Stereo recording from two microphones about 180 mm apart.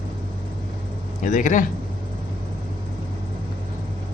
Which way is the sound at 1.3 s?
45° left (ahead or behind).